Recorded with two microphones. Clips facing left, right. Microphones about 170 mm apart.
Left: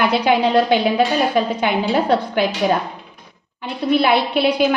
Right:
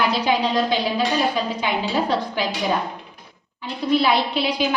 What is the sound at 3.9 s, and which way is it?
Speech, 60° left (ahead or behind).